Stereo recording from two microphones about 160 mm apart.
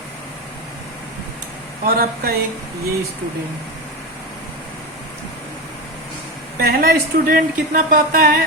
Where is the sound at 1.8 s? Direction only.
65° right (ahead or behind).